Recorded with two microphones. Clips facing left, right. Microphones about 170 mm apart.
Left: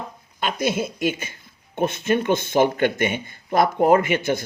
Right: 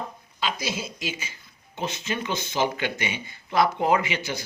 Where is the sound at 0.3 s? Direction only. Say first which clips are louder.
Left 7 dB; 55° left (ahead or behind).